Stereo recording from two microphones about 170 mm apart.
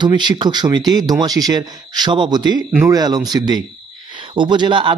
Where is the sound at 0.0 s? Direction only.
25° right (ahead or behind).